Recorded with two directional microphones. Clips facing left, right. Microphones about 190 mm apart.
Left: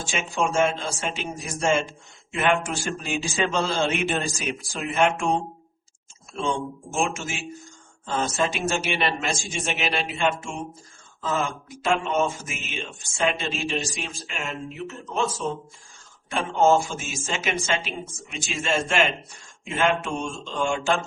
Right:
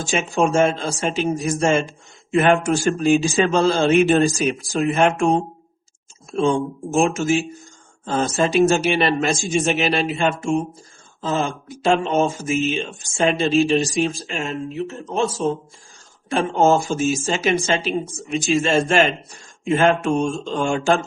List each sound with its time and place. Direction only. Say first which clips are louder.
0.0 s speech: right 7 dB; 45° right (ahead or behind)
6.9 s speech: right 10 dB; 40° right (ahead or behind)
11.2 s speech: right 4 dB; 30° right (ahead or behind)